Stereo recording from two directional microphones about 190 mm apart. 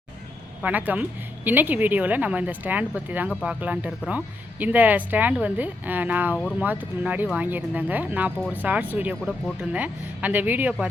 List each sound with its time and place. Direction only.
0.6 s speech: 10° right (ahead or behind)